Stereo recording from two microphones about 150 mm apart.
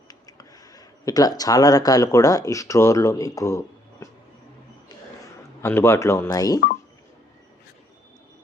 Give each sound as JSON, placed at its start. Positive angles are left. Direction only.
{"t": 0.1, "sound": "speech", "side_deg": 25}
{"t": 5.6, "sound": "speech", "side_deg": 15}